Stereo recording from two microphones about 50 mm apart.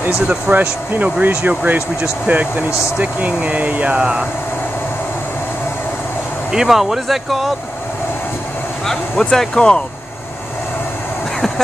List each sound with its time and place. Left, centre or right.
0.3 s speech: right
6.5 s speech: centre
8.8 s speech: centre